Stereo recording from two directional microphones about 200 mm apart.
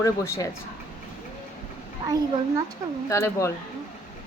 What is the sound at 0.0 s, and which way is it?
Speech, 15° left (ahead or behind).